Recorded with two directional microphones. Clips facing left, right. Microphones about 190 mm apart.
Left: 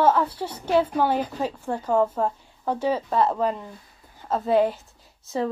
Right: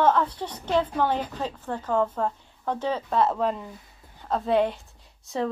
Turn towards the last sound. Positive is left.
turn(degrees=0)  # may be behind; listen again after turning